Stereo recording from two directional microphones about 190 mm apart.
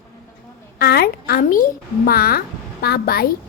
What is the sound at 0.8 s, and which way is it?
A woman's voice, 55° left (ahead or behind).